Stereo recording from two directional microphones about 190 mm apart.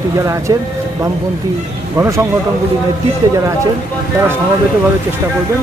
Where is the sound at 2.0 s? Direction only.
15° right (ahead or behind).